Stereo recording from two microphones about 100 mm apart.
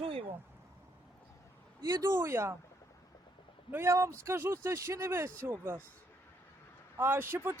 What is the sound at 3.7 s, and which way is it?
Speech, 25° right (ahead or behind).